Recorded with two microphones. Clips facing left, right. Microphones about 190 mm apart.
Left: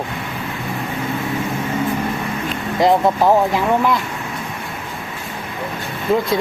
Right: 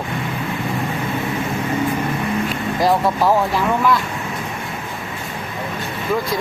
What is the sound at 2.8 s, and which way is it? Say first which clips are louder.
Speech: left 3 dB; 20° left (ahead or behind).